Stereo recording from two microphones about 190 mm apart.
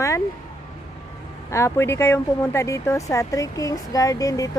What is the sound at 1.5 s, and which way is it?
Speech, 15° left (ahead or behind).